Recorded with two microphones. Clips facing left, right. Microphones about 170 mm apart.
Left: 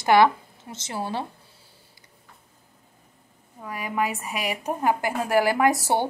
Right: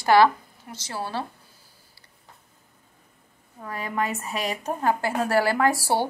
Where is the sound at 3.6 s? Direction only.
10° left (ahead or behind).